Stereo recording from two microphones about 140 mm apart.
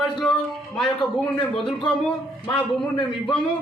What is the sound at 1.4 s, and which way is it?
Speech, 10° left (ahead or behind).